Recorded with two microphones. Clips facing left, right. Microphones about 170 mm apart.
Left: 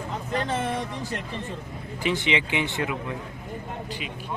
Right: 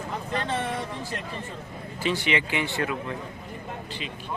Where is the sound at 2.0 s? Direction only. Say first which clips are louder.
Left 1 dB; 20° left (ahead or behind).